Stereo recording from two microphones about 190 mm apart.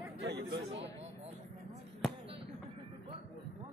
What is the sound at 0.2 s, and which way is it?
Chatter, 65° right (ahead or behind).